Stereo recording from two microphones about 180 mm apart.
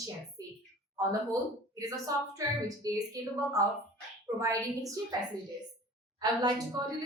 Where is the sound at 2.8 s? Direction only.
20° right (ahead or behind).